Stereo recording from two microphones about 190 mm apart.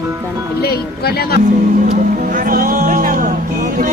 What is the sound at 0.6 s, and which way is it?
Speech, 55° left (ahead or behind).